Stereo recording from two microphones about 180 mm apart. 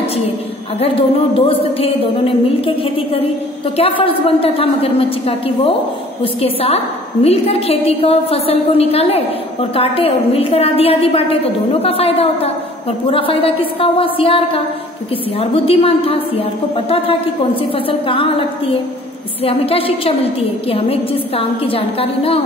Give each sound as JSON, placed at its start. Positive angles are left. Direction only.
{"t": 0.7, "sound": "a woman's voice", "side_deg": 30}
{"t": 3.7, "sound": "a woman's voice", "side_deg": 30}
{"t": 6.4, "sound": "a woman's voice", "side_deg": 30}